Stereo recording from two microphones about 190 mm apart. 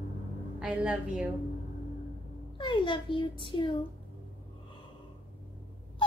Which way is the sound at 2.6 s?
25° left (ahead or behind).